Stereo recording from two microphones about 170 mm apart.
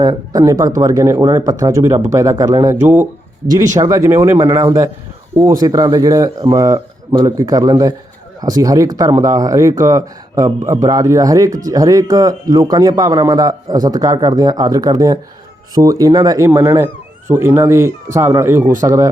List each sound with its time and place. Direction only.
0.0 s speech: 20° right (ahead or behind)
5.5 s speech: 20° right (ahead or behind)